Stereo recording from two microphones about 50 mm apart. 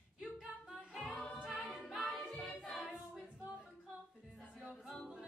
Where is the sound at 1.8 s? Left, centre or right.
Centre.